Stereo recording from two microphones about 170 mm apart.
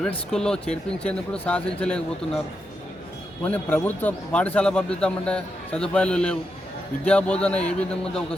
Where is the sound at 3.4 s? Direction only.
10° left (ahead or behind).